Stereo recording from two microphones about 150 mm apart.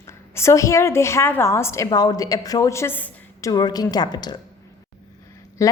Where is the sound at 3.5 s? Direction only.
25° left (ahead or behind).